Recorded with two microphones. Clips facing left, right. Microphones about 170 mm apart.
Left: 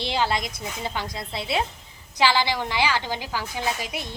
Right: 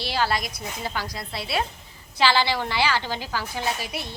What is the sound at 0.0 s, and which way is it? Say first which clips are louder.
A woman's voice: left 1 dB; 20° left (ahead or behind).